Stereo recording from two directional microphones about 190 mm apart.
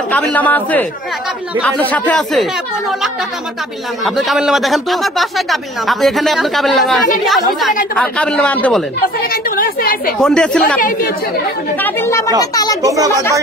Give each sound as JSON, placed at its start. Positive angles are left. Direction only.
{"t": 0.1, "sound": "speech", "side_deg": 5}
{"t": 4.0, "sound": "speech", "side_deg": 0}
{"t": 9.2, "sound": "a woman's voice", "side_deg": 50}
{"t": 10.1, "sound": "speech", "side_deg": 5}
{"t": 10.8, "sound": "a woman's voice", "side_deg": 45}
{"t": 11.8, "sound": "speech", "side_deg": 15}
{"t": 12.8, "sound": "speech", "side_deg": -15}